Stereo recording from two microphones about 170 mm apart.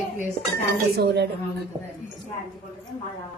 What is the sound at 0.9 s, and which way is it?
Speech, 80° right.